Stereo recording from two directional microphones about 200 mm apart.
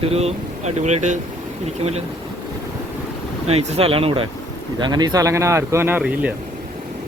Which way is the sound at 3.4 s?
30° right (ahead or behind).